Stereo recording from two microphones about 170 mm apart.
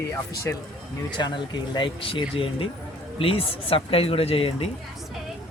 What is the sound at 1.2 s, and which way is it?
Speech, 25° left (ahead or behind).